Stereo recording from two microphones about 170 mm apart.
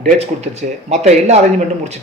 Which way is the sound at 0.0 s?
40° right (ahead or behind).